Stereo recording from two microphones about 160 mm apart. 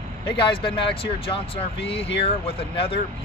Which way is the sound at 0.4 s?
35° left (ahead or behind).